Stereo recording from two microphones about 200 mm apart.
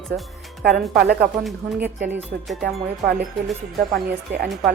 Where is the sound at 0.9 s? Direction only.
50° right (ahead or behind).